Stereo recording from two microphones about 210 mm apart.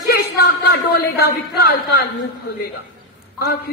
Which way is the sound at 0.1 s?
50° left (ahead or behind).